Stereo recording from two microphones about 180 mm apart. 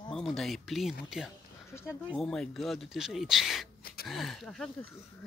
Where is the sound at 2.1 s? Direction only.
5° left (ahead or behind).